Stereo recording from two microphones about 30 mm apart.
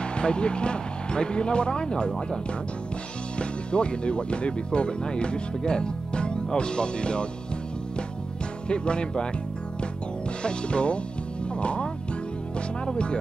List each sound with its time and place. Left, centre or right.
0.0 s speech: left
3.3 s speech: left
8.6 s speech: left
10.4 s speech: left